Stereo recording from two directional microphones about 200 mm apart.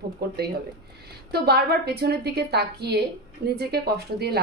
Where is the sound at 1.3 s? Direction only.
50° right (ahead or behind).